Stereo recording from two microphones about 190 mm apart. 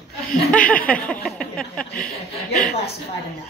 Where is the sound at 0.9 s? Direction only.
5° left (ahead or behind).